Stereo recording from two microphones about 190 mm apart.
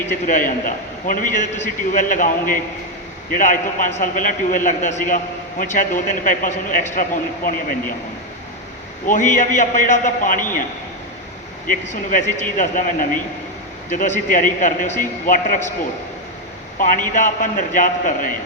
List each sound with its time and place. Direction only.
0.3 s a man's voice: 45° left (ahead or behind)
9.0 s a man's voice: 40° left (ahead or behind)
11.7 s a man's voice: 40° left (ahead or behind)
16.7 s a man's voice: 45° left (ahead or behind)